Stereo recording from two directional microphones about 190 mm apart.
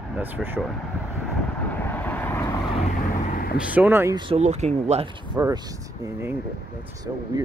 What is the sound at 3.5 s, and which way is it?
Speech, 10° right (ahead or behind).